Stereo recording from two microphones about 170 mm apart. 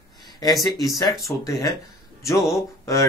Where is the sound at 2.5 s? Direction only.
15° left (ahead or behind).